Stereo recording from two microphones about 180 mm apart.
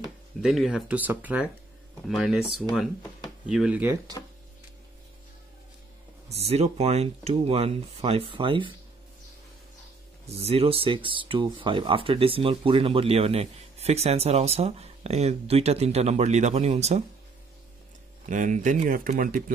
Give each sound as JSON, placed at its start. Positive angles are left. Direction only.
{"t": 0.4, "sound": "speech", "side_deg": 0}
{"t": 6.2, "sound": "speech", "side_deg": -35}
{"t": 10.2, "sound": "speech", "side_deg": -35}
{"t": 18.2, "sound": "speech", "side_deg": -45}